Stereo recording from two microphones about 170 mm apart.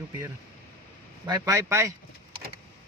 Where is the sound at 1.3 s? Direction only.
20° right (ahead or behind).